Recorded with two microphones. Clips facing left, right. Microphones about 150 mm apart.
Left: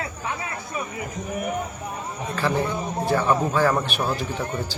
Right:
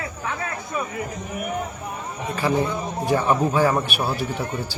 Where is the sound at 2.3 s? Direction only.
15° right (ahead or behind).